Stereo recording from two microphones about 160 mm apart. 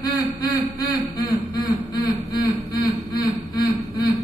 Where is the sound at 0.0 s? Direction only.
25° left (ahead or behind).